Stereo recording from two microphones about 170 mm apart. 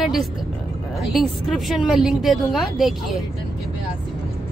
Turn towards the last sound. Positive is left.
turn(degrees=0)  # may be behind; listen again after turning